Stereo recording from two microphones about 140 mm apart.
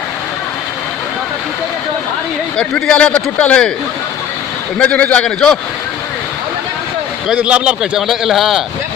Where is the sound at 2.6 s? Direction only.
5° left (ahead or behind).